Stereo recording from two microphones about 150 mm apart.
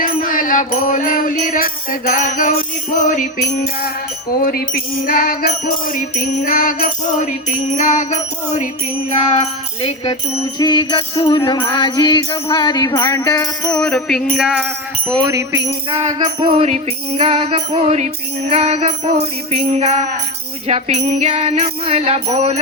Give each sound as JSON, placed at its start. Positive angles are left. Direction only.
{"t": 0.0, "sound": "music", "side_deg": 65}
{"t": 7.7, "sound": "music", "side_deg": 55}
{"t": 10.6, "sound": "music", "side_deg": 30}
{"t": 13.7, "sound": "music", "side_deg": 5}
{"t": 15.3, "sound": "jingle bell", "side_deg": -20}
{"t": 16.0, "sound": "music", "side_deg": -30}